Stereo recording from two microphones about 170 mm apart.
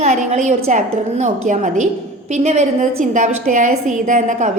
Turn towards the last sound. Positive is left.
turn(degrees=-45)  # may be behind; listen again after turning